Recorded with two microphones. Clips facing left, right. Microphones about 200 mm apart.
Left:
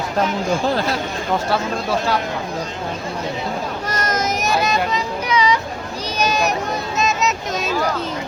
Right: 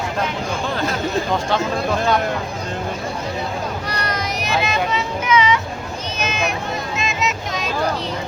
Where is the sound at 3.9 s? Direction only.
45° left (ahead or behind).